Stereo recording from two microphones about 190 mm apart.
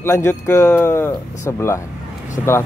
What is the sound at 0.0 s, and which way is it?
Speech, 15° left (ahead or behind).